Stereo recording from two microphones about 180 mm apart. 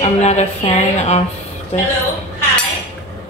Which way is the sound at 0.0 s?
40° left (ahead or behind).